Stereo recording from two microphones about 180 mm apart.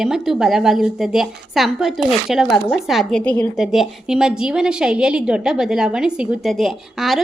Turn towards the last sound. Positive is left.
turn(degrees=0)  # may be behind; listen again after turning